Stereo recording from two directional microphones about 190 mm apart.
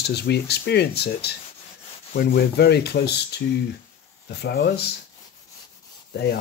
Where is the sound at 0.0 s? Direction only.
60° left (ahead or behind).